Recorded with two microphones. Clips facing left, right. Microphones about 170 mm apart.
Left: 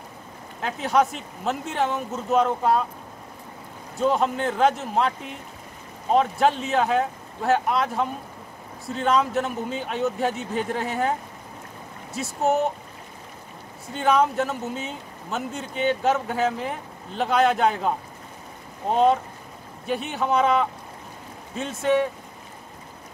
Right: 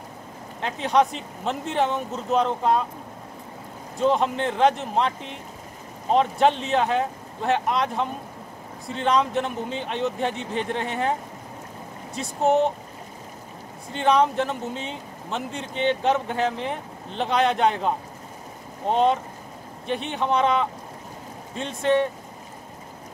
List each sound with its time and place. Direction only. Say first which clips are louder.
0.6 s speech: right 1 dB; 5° left (ahead or behind)
4.0 s speech: even; centre (ahead or behind)
6.1 s speech: right 1 dB; centre (ahead or behind)
12.1 s speech: right 2 dB; 5° left (ahead or behind)
13.9 s speech: right 1 dB; 5° left (ahead or behind)